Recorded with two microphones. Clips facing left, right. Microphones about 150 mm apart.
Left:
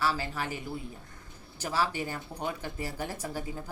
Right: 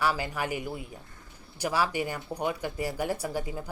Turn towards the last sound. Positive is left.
turn(degrees=-15)  # may be behind; listen again after turning